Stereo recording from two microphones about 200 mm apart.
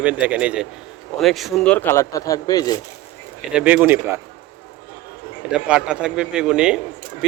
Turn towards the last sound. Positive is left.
turn(degrees=-5)  # may be behind; listen again after turning